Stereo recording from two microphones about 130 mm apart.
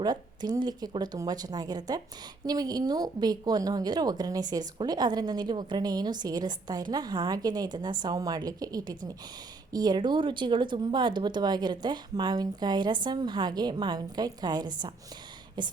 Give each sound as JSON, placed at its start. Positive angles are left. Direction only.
{"t": 0.0, "sound": "a woman's voice", "side_deg": -30}